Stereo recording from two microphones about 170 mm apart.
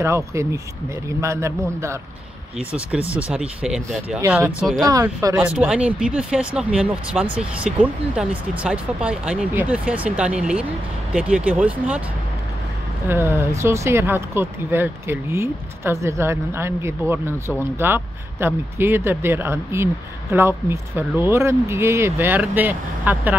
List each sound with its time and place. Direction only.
0.0 s speech: 15° right (ahead or behind)
3.2 s speech: 5° right (ahead or behind)
4.2 s speech: 15° right (ahead or behind)
13.1 s speech: 15° right (ahead or behind)